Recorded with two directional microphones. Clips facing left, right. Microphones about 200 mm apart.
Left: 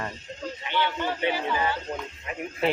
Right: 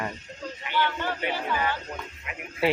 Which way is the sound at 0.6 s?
20° left (ahead or behind).